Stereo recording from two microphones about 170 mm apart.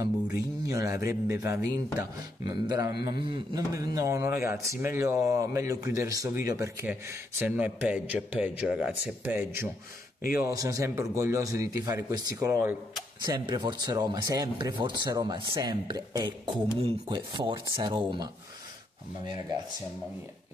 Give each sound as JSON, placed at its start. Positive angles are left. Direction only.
{"t": 0.0, "sound": "a man's voice", "side_deg": -20}